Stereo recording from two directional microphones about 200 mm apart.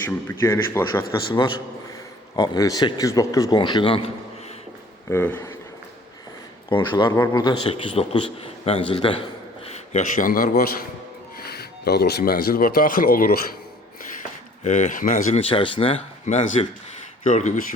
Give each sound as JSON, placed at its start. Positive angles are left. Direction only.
{"t": 0.3, "sound": "speech", "side_deg": 15}
{"t": 1.3, "sound": "a man's voice", "side_deg": 25}
{"t": 5.0, "sound": "speech", "side_deg": 10}
{"t": 6.7, "sound": "a man's voice", "side_deg": 25}
{"t": 14.6, "sound": "speech", "side_deg": 40}